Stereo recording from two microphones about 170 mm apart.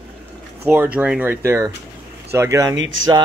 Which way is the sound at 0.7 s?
10° right (ahead or behind).